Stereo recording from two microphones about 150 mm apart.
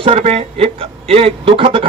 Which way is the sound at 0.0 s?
40° right (ahead or behind).